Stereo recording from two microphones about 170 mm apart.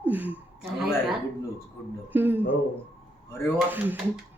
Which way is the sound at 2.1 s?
10° right (ahead or behind).